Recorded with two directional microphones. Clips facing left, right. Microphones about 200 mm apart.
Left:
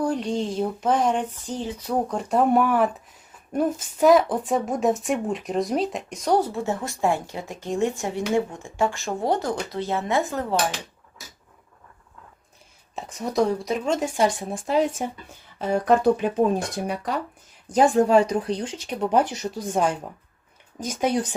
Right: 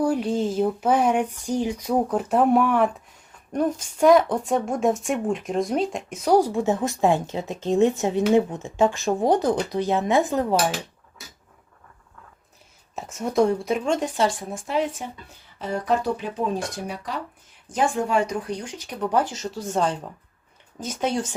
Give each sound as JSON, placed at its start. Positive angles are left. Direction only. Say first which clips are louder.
{"t": 0.0, "sound": "a sound", "louder": "right 2 dB", "side_deg": -10}
{"t": 3.5, "sound": "a woman's voice", "louder": "even", "side_deg": 5}
{"t": 8.4, "sound": "a sound", "louder": "right 4 dB", "side_deg": -20}
{"t": 13.0, "sound": "a woman's voice", "louder": "right 2 dB", "side_deg": 0}
{"t": 14.2, "sound": "speech", "louder": "left 1 dB", "side_deg": 20}
{"t": 14.5, "sound": "speech", "louder": "left 3 dB", "side_deg": 40}
{"t": 15.5, "sound": "speech", "louder": "left 4 dB", "side_deg": 50}
{"t": 17.7, "sound": "speech", "louder": "left 6 dB", "side_deg": 40}
{"t": 19.3, "sound": "speech", "louder": "left 1 dB", "side_deg": 15}